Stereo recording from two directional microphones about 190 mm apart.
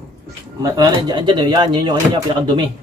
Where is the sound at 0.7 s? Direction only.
20° right (ahead or behind).